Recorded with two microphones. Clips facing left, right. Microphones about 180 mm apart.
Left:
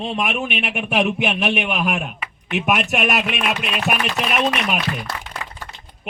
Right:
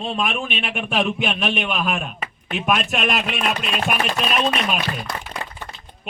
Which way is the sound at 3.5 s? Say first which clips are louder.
Left 1 dB; 35° right (ahead or behind).